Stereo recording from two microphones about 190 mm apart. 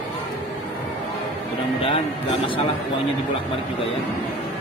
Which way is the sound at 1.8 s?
30° left (ahead or behind).